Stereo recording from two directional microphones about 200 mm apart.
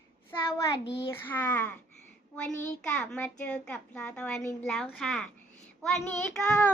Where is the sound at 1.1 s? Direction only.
10° left (ahead or behind).